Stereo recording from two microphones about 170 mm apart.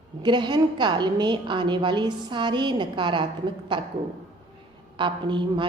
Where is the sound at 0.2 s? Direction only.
25° right (ahead or behind).